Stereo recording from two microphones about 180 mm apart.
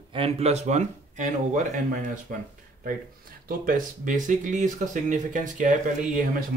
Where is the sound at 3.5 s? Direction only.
50° right (ahead or behind).